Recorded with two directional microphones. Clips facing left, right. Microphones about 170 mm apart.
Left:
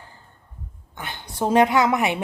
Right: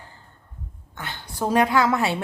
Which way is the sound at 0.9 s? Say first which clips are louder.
Left 1 dB; 15° left (ahead or behind).